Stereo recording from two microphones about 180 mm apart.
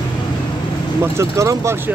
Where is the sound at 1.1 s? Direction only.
15° right (ahead or behind).